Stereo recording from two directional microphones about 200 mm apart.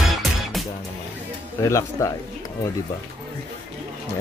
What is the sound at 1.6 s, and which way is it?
Speech, 15° left (ahead or behind).